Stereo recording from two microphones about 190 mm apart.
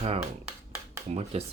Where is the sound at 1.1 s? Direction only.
35° right (ahead or behind).